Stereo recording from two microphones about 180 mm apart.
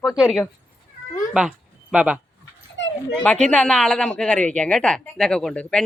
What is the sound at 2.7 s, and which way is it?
Dog, 90° left.